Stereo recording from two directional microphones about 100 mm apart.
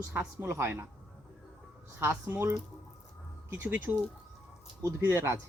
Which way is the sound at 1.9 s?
25° right (ahead or behind).